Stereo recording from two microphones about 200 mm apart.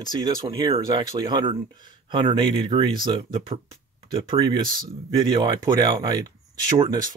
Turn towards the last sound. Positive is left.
turn(degrees=-20)  # may be behind; listen again after turning